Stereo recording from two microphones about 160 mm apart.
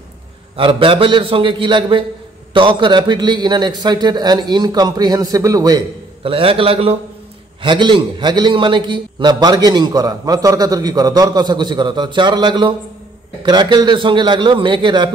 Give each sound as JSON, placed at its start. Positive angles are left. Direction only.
{"t": 0.6, "sound": "a man's voice", "side_deg": -35}